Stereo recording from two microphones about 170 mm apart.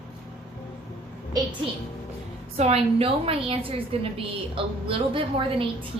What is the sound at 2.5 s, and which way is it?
A woman's voice, 40° right (ahead or behind).